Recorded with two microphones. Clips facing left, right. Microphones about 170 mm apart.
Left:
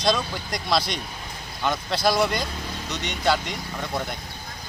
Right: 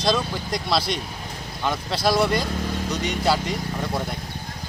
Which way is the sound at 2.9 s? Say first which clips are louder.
Right 3 dB; 35° right (ahead or behind).